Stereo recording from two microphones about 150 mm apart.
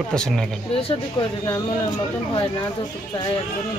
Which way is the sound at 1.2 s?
30° left (ahead or behind).